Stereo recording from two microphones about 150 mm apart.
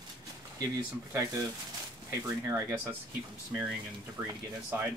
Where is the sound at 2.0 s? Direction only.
15° right (ahead or behind).